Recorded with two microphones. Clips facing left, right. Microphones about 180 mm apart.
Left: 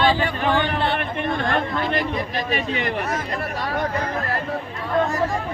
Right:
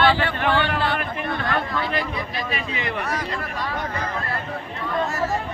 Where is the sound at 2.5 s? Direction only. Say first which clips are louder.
Left 5 dB; 45° left (ahead or behind).